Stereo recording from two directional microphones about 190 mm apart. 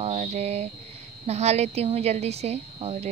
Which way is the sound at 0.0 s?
35° right (ahead or behind).